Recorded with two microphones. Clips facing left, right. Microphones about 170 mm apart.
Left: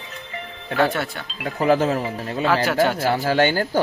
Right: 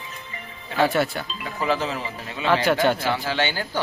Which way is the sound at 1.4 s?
55° left (ahead or behind).